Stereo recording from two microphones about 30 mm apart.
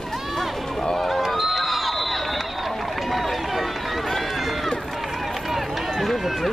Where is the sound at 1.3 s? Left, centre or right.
Centre.